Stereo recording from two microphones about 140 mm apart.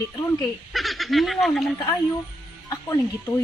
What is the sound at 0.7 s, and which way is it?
Speech, centre (ahead or behind).